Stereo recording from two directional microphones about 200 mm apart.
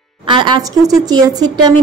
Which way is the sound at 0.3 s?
25° right (ahead or behind).